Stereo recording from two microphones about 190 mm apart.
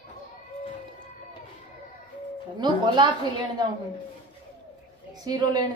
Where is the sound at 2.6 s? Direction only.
25° right (ahead or behind).